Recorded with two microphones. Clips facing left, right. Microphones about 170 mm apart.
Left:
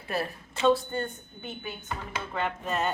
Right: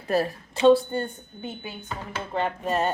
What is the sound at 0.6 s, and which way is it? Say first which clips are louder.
A woman's voice: right 6 dB; 30° right (ahead or behind).